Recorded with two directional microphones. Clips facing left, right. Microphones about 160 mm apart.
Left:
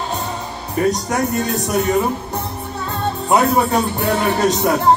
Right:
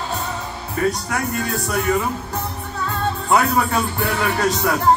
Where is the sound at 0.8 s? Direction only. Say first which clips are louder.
Left 4 dB; 25° left (ahead or behind).